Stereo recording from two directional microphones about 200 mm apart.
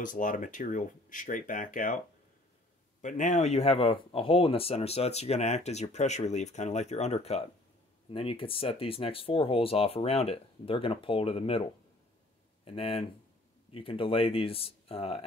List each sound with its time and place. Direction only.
0.0 s speech: 40° left (ahead or behind)
3.0 s speech: 35° left (ahead or behind)